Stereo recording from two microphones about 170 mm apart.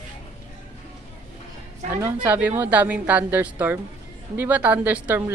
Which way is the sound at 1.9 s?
15° right (ahead or behind).